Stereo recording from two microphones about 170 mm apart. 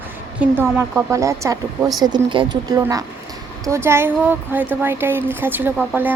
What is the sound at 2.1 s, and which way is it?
Speech, 30° right (ahead or behind).